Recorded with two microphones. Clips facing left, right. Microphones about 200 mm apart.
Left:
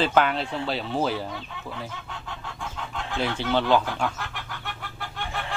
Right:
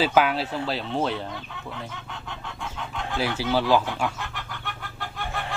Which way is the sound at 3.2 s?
5° right (ahead or behind).